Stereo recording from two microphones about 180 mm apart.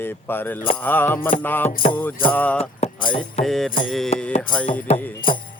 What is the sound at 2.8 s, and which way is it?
Music, 35° left (ahead or behind).